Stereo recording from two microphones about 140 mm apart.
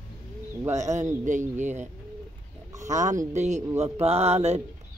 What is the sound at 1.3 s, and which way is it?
Speech, 60° right (ahead or behind).